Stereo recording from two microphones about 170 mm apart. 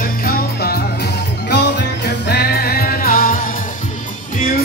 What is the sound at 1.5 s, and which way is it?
Music, 85° left.